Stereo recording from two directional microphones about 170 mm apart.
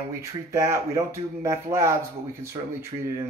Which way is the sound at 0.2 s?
20° right (ahead or behind).